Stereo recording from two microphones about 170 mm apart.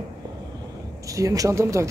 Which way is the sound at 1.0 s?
20° right (ahead or behind).